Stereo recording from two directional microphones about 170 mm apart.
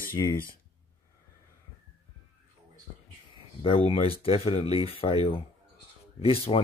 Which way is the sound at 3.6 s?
35° left (ahead or behind).